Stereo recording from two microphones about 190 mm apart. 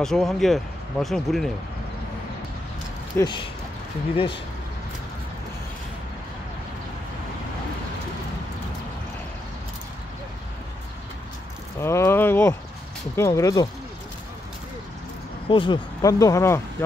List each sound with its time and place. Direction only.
0.0 s speech: centre (ahead or behind)
3.2 s speech: 25° left (ahead or behind)
11.8 s speech: 15° left (ahead or behind)
15.4 s speech: 25° left (ahead or behind)